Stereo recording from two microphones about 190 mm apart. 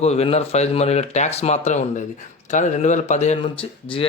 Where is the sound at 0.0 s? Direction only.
35° left (ahead or behind).